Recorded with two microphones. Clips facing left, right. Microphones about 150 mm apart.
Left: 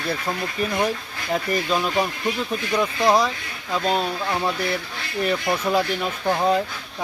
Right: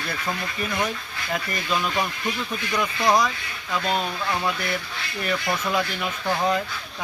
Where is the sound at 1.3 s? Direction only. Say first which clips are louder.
Left 5 dB; 30° left (ahead or behind).